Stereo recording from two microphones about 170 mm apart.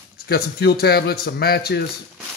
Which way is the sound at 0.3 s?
70° left (ahead or behind).